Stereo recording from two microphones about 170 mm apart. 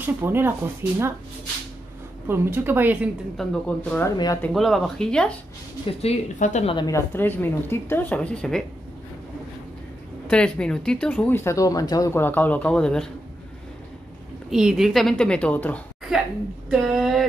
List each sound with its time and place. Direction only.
0.0 s a woman's voice: 10° right (ahead or behind)
2.2 s a woman's voice: 15° right (ahead or behind)
3.6 s a woman's voice: 10° left (ahead or behind)
6.0 s speech: 45° left (ahead or behind)
6.7 s a woman's voice: 25° left (ahead or behind)
7.1 s speech: 10° left (ahead or behind)
10.3 s speech: 5° left (ahead or behind)
14.5 s a woman's voice: 5° right (ahead or behind)